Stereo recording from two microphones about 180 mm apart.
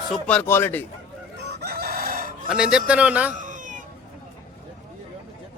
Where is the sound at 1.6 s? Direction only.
60° right (ahead or behind).